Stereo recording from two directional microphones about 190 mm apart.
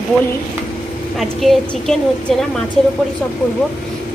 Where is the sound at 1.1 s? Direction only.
Centre (ahead or behind).